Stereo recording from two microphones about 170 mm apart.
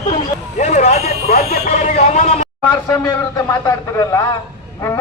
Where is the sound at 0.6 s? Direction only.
40° left (ahead or behind).